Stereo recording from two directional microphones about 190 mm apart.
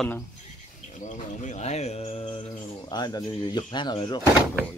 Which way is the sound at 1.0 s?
40° left (ahead or behind).